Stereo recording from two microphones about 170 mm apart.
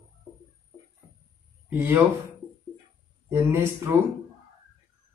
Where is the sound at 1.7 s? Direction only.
10° right (ahead or behind).